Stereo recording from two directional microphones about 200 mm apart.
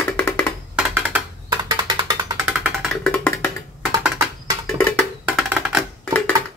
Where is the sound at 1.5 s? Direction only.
20° right (ahead or behind).